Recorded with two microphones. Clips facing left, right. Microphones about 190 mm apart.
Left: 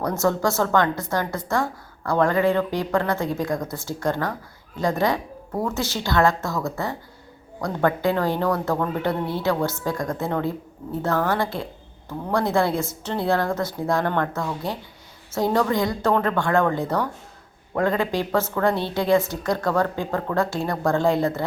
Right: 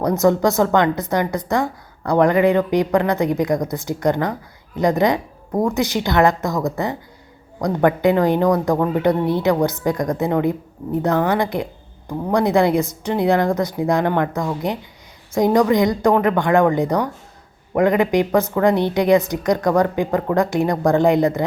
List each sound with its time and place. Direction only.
0.0 s a woman's voice: 15° right (ahead or behind)